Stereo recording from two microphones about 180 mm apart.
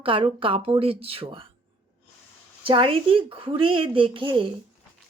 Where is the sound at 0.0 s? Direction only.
30° right (ahead or behind).